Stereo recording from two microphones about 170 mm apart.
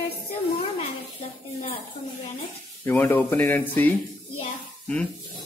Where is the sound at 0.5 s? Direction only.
35° left (ahead or behind).